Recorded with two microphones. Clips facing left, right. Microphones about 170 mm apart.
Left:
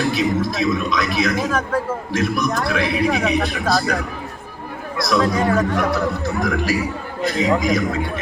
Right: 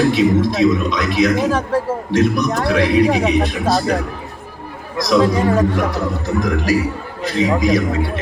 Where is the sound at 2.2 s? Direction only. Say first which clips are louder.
Right 4 dB; 25° right (ahead or behind).